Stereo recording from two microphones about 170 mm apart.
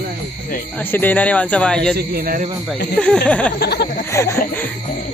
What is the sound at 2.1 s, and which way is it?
Speech, 55° right (ahead or behind).